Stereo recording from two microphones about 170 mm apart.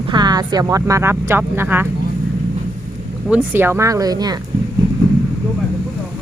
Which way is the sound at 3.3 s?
10° right (ahead or behind).